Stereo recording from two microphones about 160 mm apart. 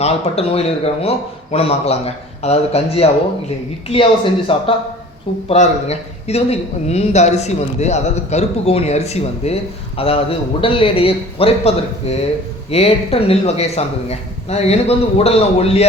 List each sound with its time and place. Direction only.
0.0 s a man's voice: 40° left (ahead or behind)